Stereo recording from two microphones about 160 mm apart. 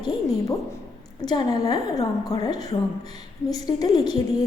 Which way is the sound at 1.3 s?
25° left (ahead or behind).